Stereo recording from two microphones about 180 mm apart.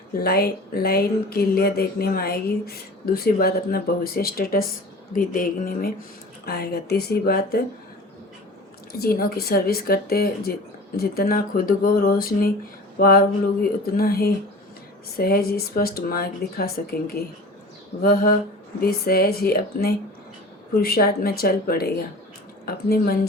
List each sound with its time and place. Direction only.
0.2 s speech: 60° left (ahead or behind)
8.9 s speech: 60° left (ahead or behind)